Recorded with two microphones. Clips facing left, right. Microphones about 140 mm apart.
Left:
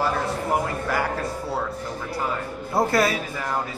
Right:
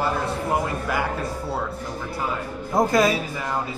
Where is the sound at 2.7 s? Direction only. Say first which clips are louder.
Right 2 dB; 20° right (ahead or behind).